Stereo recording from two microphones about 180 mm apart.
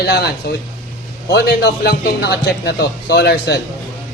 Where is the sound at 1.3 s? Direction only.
65° left (ahead or behind).